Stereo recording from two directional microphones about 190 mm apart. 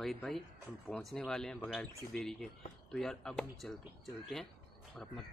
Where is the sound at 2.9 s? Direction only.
5° left (ahead or behind).